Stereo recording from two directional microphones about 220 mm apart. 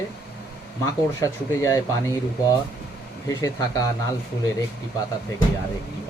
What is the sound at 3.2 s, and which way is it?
Speech, 15° left (ahead or behind).